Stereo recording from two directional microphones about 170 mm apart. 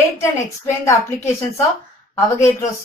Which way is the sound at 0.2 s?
15° left (ahead or behind).